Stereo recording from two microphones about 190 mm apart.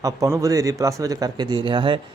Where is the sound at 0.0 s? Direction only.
15° right (ahead or behind).